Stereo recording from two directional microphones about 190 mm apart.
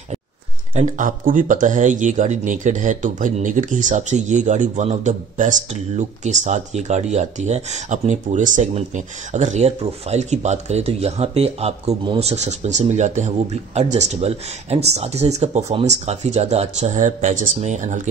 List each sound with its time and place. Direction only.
0.7 s speech: 40° right (ahead or behind)